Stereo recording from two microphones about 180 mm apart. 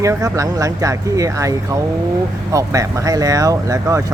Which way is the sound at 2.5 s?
20° right (ahead or behind).